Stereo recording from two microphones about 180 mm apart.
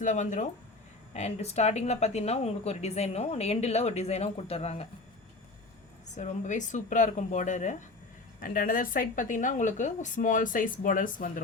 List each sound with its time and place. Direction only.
0.0 s a woman's voice: 45° left (ahead or behind)
6.1 s a woman's voice: 40° left (ahead or behind)